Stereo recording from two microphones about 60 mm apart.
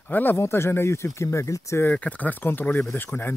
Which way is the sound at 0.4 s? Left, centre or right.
Left.